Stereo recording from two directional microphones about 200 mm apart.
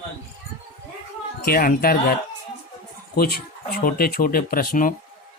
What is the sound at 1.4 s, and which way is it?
Speech, 45° left (ahead or behind).